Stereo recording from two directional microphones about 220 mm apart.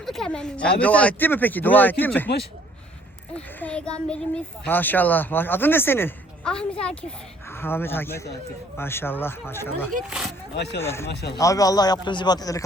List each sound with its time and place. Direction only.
0.0 s speech: centre (ahead or behind)
3.3 s a child's voice: 5° left (ahead or behind)
10.1 s a child's voice: 5° right (ahead or behind)
10.5 s speech: 50° left (ahead or behind)
10.8 s speech: 10° left (ahead or behind)
11.1 s speech: 50° left (ahead or behind)
11.3 s speech: 15° left (ahead or behind)